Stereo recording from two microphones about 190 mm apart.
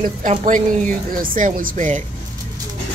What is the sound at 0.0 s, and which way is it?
Speech, 45° right (ahead or behind).